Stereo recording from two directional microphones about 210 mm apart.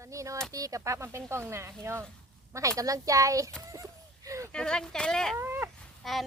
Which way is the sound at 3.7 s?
15° right (ahead or behind).